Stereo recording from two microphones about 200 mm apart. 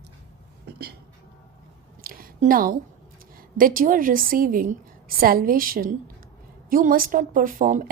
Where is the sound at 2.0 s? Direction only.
45° right (ahead or behind).